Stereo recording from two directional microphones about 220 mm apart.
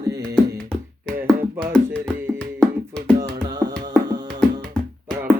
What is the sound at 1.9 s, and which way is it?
Music, 10° right (ahead or behind).